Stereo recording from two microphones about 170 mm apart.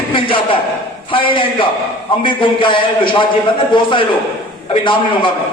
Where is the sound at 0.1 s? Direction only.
30° left (ahead or behind).